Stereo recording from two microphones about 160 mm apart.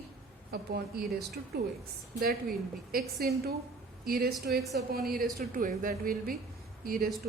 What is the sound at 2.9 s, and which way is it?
A woman's voice, 70° right (ahead or behind).